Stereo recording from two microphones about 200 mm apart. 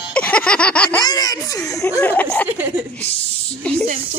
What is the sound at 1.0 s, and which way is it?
Laughter, 20° left (ahead or behind).